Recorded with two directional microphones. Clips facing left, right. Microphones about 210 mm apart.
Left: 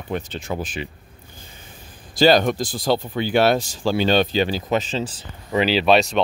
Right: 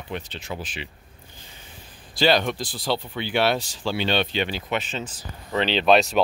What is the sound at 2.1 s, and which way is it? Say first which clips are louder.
Speech: left 5 dB; 45° left (ahead or behind).